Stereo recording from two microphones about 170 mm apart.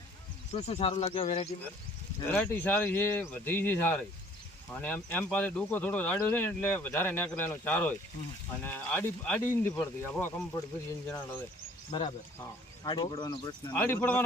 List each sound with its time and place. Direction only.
0.5 s speech: 35° left (ahead or behind)
2.3 s speech: 10° left (ahead or behind)
11.9 s speech: 30° left (ahead or behind); by 14.2 s 10° left (ahead or behind)